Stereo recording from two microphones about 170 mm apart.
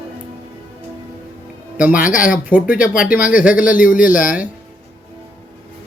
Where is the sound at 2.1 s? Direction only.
50° left (ahead or behind).